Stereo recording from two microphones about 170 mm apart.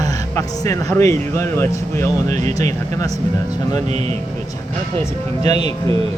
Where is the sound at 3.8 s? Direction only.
40° right (ahead or behind).